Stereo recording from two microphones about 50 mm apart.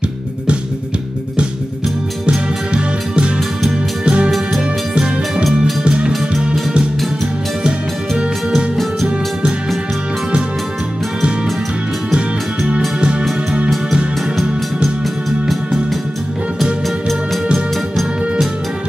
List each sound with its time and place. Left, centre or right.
4.0 s music: right
5.3 s music: centre
5.9 s music: centre
12.6 s music: right
15.4 s music: centre